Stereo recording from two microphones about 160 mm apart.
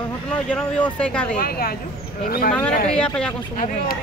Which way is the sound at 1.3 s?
70° left (ahead or behind).